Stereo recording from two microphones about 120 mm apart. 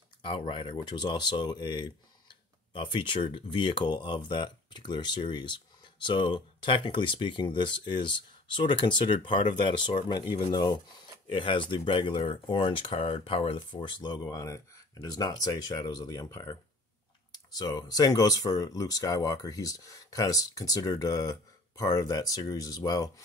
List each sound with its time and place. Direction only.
0.2 s speech: 45° left (ahead or behind)